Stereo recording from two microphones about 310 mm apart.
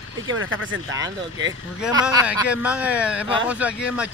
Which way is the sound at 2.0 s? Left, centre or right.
Centre.